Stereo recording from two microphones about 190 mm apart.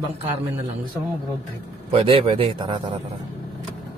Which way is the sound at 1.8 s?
30° right (ahead or behind).